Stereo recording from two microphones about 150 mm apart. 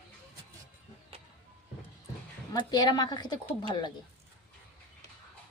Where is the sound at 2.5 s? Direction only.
25° left (ahead or behind).